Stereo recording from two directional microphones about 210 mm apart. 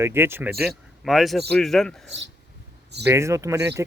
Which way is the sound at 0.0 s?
10° right (ahead or behind).